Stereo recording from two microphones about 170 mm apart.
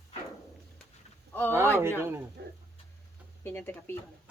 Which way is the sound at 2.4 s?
70° right (ahead or behind).